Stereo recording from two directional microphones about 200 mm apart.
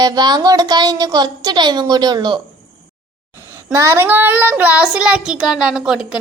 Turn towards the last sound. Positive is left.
turn(degrees=-5)  # may be behind; listen again after turning